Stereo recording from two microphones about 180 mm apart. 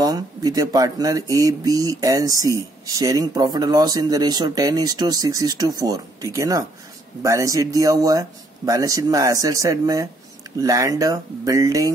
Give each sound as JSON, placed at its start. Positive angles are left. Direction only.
{"t": 0.0, "sound": "speech", "side_deg": -20}